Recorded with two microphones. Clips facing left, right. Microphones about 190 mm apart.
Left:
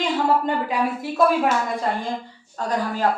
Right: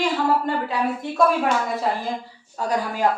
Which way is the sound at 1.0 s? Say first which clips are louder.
Left 1 dB; 5° left (ahead or behind).